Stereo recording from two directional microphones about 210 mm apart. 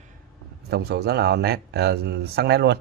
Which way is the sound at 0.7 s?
50° right (ahead or behind).